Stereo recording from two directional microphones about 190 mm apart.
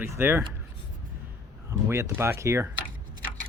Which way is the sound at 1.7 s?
15° right (ahead or behind).